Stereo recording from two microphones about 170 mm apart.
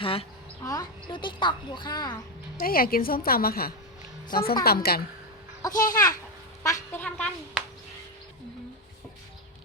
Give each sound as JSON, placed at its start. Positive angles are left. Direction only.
{"t": 0.0, "sound": "a woman's voice", "side_deg": 35}
{"t": 0.6, "sound": "speech", "side_deg": 20}
{"t": 2.6, "sound": "a woman's voice", "side_deg": 60}
{"t": 5.8, "sound": "a woman's voice", "side_deg": 20}